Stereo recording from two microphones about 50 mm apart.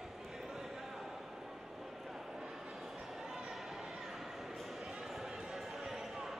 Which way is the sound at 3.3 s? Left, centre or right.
Centre.